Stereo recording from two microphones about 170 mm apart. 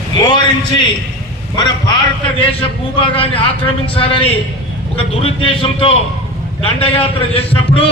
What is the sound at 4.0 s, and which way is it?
A man's voice, 30° left (ahead or behind).